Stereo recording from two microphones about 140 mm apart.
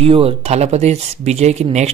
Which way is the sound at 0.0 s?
45° right (ahead or behind).